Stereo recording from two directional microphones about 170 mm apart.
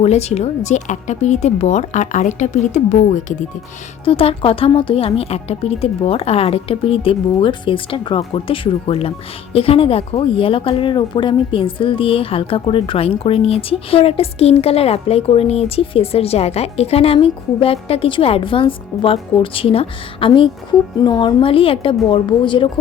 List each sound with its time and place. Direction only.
0.0 s speech: 40° left (ahead or behind)
4.0 s speech: 35° left (ahead or behind)